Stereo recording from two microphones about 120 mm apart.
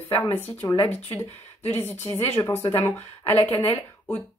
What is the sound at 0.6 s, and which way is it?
Speech, 40° left (ahead or behind).